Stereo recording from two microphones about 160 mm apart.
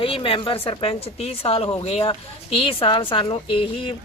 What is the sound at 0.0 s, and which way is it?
Speech, 35° left (ahead or behind).